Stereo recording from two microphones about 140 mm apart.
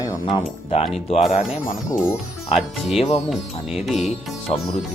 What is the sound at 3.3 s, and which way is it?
Speech, centre (ahead or behind).